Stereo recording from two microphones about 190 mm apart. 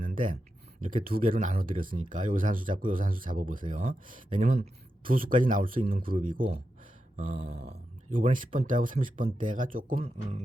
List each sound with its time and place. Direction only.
0.0 s a sound: 45° right (ahead or behind)
0.9 s speech: 50° right (ahead or behind)
5.0 s speech: 50° right (ahead or behind)
7.4 s speech: 60° right (ahead or behind)
8.2 s speech: 45° right (ahead or behind)